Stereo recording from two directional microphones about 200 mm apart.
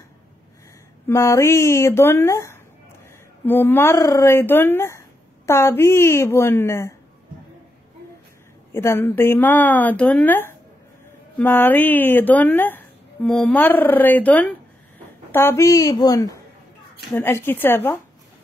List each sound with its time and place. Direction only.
1.0 s a woman's voice: 15° left (ahead or behind)
8.7 s a woman's voice: 10° left (ahead or behind)